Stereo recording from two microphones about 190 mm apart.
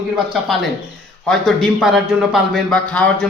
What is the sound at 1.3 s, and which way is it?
A man's voice, centre (ahead or behind).